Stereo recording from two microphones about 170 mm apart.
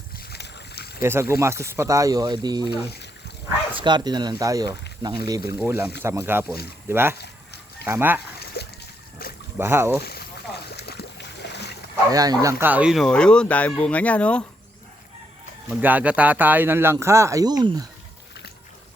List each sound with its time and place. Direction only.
0.3 s boat: 75° left (ahead or behind)
1.0 s speech: 15° right (ahead or behind)
2.9 s a sound: 75° left (ahead or behind)
3.8 s speech: 25° right (ahead or behind)
5.5 s speech: 15° right (ahead or behind)
7.2 s a sound: 75° left (ahead or behind)
7.9 s speech: 10° right (ahead or behind)
8.6 s a sound: 70° left (ahead or behind)
9.2 s boat: 60° left (ahead or behind)
9.6 s speech: 15° right (ahead or behind)
10.0 s speech: 70° left (ahead or behind)
10.8 s boat: 75° left (ahead or behind)
12.1 s speech: 20° right (ahead or behind); by 14.4 s 5° left (ahead or behind)
15.7 s speech: 10° right (ahead or behind)